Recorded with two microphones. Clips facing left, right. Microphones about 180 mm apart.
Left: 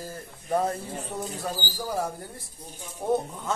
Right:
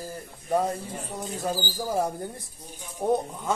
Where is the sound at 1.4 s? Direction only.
20° right (ahead or behind).